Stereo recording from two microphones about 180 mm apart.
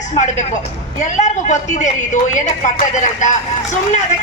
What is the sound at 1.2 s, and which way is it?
A woman's voice, 40° left (ahead or behind).